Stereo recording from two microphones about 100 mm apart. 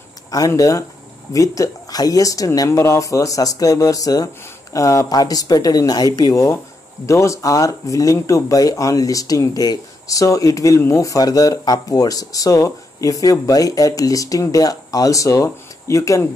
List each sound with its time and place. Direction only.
0.6 s speech: 35° left (ahead or behind)